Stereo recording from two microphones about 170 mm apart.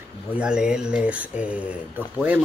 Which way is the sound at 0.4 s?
5° right (ahead or behind).